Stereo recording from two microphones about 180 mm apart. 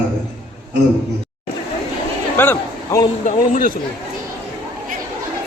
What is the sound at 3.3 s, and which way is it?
Speech, 45° left (ahead or behind).